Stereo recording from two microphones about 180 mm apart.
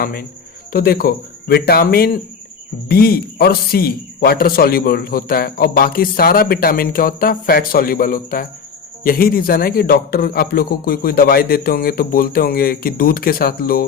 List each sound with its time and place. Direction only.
0.0 s speech: 55° left (ahead or behind)